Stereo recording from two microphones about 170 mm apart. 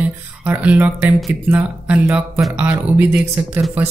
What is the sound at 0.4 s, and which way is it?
Speech, 10° right (ahead or behind).